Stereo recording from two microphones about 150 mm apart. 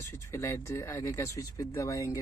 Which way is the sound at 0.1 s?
20° left (ahead or behind).